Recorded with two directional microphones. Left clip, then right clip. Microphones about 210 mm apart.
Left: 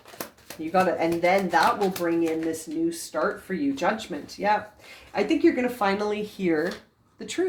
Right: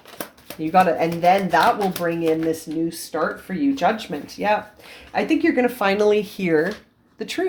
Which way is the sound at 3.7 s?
35° right (ahead or behind).